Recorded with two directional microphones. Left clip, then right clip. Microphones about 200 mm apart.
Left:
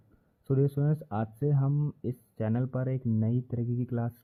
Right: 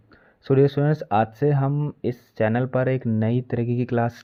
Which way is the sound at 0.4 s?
10° right (ahead or behind).